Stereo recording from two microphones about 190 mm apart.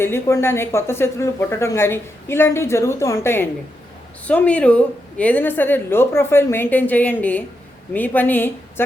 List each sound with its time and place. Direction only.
0.0 s speech: 15° left (ahead or behind)